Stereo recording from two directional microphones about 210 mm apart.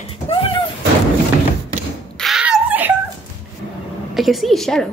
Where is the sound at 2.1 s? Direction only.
Centre (ahead or behind).